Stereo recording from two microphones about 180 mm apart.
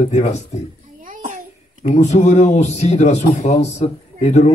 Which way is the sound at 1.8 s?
40° left (ahead or behind).